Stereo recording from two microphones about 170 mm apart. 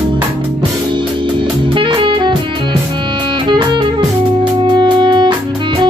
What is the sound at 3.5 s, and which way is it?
Music, 25° right (ahead or behind).